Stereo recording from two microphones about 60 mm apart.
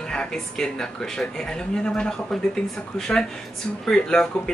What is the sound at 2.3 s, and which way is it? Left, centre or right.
Speech, centre.